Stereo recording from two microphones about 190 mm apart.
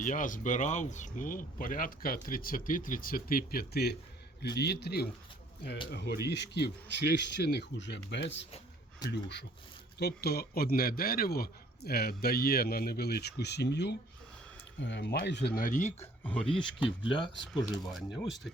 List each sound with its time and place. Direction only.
0.0 s a man's voice: 45° left (ahead or behind)
16.2 s speech: 10° left (ahead or behind)
17.5 s speech: centre (ahead or behind)